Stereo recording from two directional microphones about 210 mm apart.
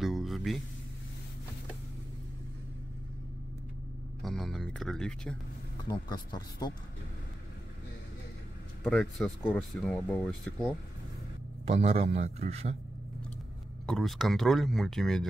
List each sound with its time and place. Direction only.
0.0 s a sound: centre (ahead or behind)
4.2 s music: centre (ahead or behind)
5.9 s speech: 20° left (ahead or behind)
8.8 s speech: centre (ahead or behind)
11.6 s a man's voice: 30° right (ahead or behind)
13.8 s speech: centre (ahead or behind)